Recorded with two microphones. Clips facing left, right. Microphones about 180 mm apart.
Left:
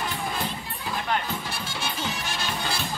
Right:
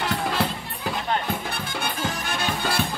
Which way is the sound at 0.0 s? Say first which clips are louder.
Right 5 dB; 75° right (ahead or behind).